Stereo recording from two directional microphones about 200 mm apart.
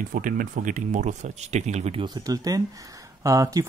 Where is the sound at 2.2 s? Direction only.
20° right (ahead or behind).